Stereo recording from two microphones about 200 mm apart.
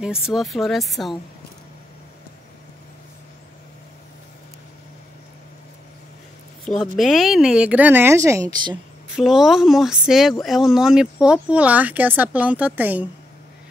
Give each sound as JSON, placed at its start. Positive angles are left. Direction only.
{"t": 0.0, "sound": "speech", "side_deg": -5}
{"t": 6.6, "sound": "speech", "side_deg": 5}
{"t": 9.1, "sound": "speech", "side_deg": 0}